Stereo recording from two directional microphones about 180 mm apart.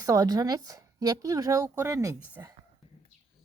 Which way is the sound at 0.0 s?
20° right (ahead or behind).